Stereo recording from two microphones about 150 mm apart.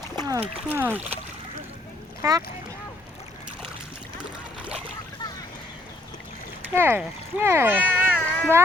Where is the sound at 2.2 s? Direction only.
20° right (ahead or behind).